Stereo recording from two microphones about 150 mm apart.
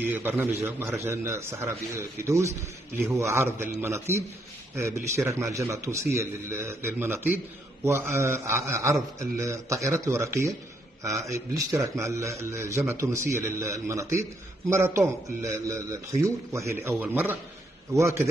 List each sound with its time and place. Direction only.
0.0 s a man's voice: 15° right (ahead or behind)